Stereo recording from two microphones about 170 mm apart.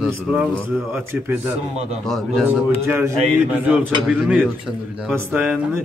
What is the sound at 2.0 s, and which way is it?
Speech, centre (ahead or behind).